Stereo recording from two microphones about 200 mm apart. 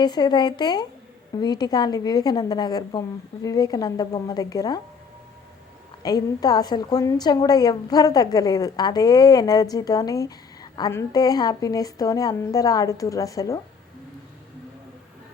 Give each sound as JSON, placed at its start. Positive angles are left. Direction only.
{"t": 0.0, "sound": "a woman's voice", "side_deg": 20}
{"t": 6.0, "sound": "a woman's voice", "side_deg": 20}